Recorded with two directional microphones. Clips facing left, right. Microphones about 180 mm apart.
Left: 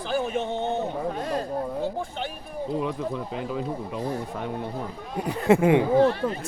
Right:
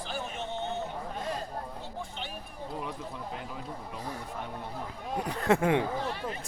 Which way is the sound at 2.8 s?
90° left.